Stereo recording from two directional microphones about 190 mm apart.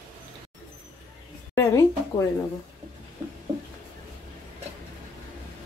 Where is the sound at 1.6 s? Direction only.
15° left (ahead or behind).